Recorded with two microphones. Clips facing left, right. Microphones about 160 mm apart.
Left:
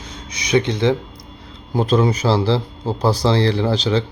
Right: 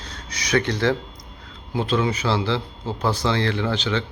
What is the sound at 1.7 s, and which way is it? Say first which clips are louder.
A man's voice: left 5 dB; 40° left (ahead or behind).